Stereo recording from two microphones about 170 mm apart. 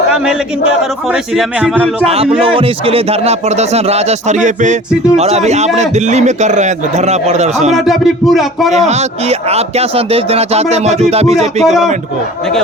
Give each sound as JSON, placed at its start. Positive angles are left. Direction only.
{"t": 0.1, "sound": "speech", "side_deg": -5}
{"t": 2.0, "sound": "speech", "side_deg": -35}
{"t": 7.7, "sound": "speech", "side_deg": 0}
{"t": 8.7, "sound": "speech", "side_deg": -40}
{"t": 11.6, "sound": "speech", "side_deg": 0}